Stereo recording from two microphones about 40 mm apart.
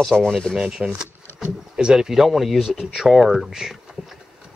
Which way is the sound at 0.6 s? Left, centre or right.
Centre.